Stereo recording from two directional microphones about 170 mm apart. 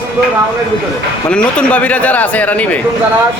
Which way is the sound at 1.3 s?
5° left (ahead or behind).